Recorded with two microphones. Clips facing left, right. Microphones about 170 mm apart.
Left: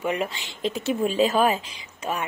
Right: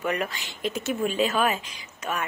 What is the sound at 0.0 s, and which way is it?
A woman's voice, 25° left (ahead or behind).